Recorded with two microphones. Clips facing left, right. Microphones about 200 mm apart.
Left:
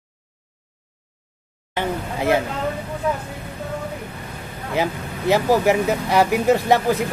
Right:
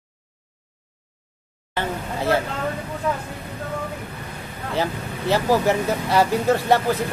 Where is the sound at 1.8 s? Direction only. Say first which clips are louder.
Left 2 dB; 15° left (ahead or behind).